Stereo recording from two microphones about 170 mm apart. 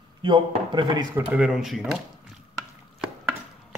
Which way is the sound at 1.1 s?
10° right (ahead or behind).